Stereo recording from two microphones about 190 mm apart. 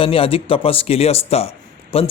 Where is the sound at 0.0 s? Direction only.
30° left (ahead or behind).